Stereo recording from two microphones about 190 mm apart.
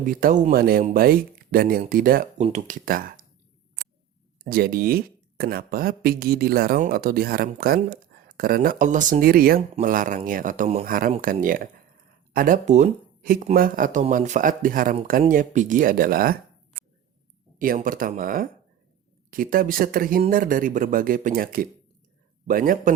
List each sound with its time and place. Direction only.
0.0 s speech: 45° right (ahead or behind)
2.4 s speech: 40° right (ahead or behind)
4.4 s speech: 50° right (ahead or behind)
17.6 s speech: 45° right (ahead or behind)